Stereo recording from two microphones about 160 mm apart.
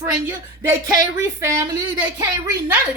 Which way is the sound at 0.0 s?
15° right (ahead or behind).